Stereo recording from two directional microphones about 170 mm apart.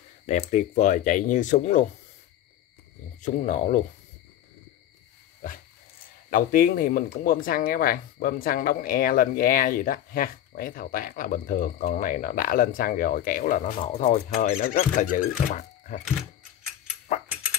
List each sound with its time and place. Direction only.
0.3 s speech: 45° left (ahead or behind)
3.2 s speech: 45° left (ahead or behind)
6.3 s speech: 55° left (ahead or behind)